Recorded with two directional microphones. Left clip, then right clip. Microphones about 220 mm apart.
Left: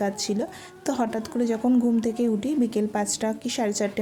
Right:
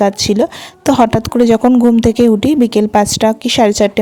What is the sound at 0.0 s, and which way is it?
A woman's voice, 35° right (ahead or behind).